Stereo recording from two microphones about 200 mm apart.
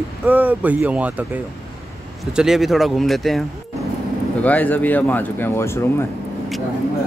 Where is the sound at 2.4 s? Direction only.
Centre (ahead or behind).